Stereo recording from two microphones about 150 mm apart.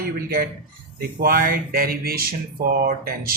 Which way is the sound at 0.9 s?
75° right (ahead or behind).